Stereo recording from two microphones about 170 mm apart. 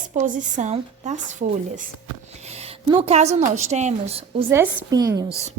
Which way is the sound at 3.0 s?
40° right (ahead or behind).